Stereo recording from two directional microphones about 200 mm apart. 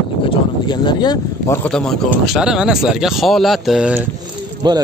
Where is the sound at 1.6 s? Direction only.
5° left (ahead or behind).